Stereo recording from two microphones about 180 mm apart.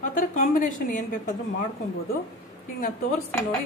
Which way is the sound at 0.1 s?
50° left (ahead or behind).